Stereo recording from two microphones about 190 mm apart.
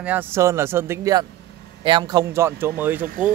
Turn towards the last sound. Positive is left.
turn(degrees=-10)  # may be behind; listen again after turning